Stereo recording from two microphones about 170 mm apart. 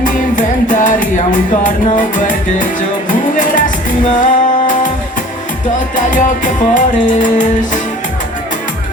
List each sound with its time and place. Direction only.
0.0 s music: 50° left (ahead or behind)
6.1 s music: 50° left (ahead or behind)